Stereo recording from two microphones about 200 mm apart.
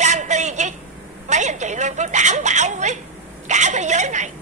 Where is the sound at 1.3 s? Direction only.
35° right (ahead or behind).